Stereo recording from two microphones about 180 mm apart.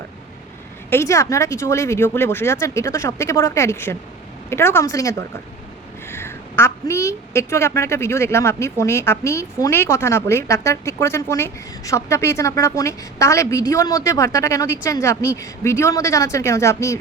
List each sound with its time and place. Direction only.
0.9 s a woman's voice: 15° left (ahead or behind)